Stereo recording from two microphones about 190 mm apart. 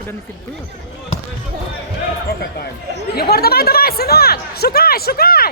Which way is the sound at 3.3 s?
55° left (ahead or behind).